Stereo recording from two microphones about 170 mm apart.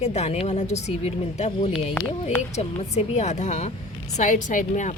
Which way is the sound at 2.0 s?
5° left (ahead or behind).